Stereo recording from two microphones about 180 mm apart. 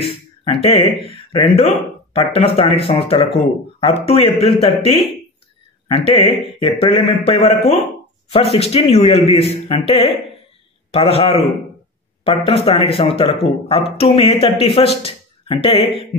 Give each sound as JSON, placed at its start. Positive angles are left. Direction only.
{"t": 0.0, "sound": "speech", "side_deg": 35}